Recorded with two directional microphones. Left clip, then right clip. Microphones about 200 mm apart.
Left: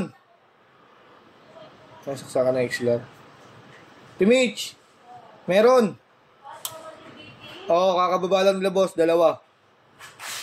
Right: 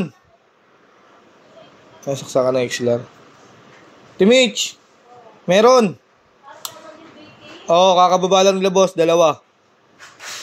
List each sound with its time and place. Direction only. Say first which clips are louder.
2.0 s a man's voice: right 5 dB; 40° right (ahead or behind)
4.2 s a man's voice: right 6 dB; 40° right (ahead or behind)
7.6 s a man's voice: right 8 dB; 45° right (ahead or behind)